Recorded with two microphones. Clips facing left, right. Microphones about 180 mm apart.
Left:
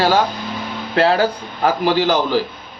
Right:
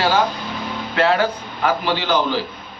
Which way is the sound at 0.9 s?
35° left (ahead or behind).